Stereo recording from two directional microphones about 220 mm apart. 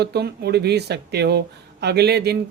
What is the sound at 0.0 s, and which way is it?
Speech, 45° right (ahead or behind).